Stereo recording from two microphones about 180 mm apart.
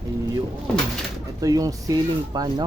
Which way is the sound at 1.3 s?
20° right (ahead or behind).